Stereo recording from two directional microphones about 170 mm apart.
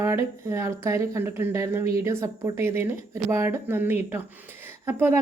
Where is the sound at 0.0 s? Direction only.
15° right (ahead or behind).